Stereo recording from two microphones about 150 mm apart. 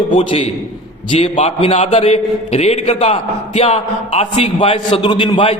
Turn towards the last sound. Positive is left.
turn(degrees=35)  # may be behind; listen again after turning